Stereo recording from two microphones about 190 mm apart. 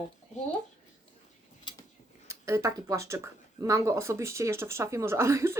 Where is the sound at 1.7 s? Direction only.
25° left (ahead or behind).